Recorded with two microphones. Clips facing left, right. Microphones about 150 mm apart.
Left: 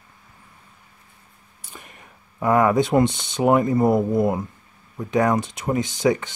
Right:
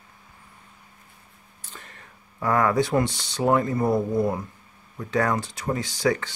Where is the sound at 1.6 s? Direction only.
15° left (ahead or behind).